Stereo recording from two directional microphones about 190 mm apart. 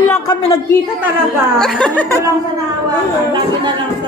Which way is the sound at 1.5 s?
Centre (ahead or behind).